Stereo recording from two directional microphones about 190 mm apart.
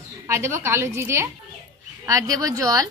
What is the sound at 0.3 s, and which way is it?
A woman's voice, 15° right (ahead or behind).